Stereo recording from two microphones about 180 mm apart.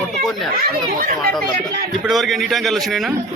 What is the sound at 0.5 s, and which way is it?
Speech, 50° right (ahead or behind).